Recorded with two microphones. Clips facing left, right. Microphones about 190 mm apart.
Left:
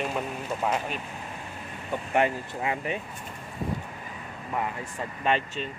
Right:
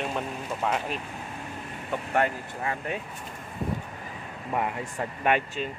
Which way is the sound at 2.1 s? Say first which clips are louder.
Left 2 dB; 15° left (ahead or behind).